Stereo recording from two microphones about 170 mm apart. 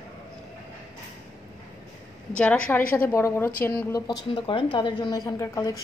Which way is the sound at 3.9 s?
20° left (ahead or behind).